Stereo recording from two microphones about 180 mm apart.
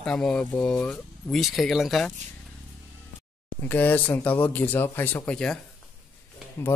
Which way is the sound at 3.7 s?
10° left (ahead or behind).